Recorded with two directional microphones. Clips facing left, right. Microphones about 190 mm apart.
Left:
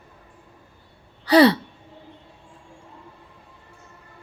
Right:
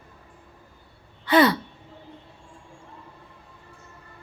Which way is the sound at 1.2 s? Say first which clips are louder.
Left 4 dB; 35° left (ahead or behind).